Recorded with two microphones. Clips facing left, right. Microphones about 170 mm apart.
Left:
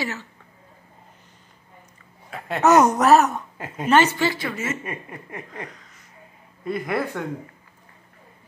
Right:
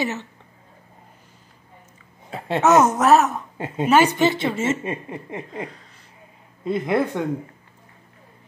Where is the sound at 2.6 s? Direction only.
Centre (ahead or behind).